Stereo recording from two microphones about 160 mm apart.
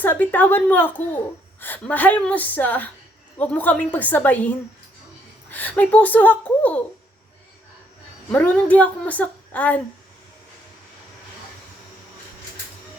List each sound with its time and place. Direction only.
0.0 s speech: 10° left (ahead or behind)
8.3 s speech: 10° left (ahead or behind)